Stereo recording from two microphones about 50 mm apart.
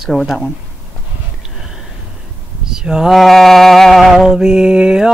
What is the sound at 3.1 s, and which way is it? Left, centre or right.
Sheep, centre.